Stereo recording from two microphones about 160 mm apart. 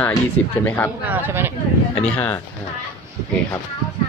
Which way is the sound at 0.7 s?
15° left (ahead or behind).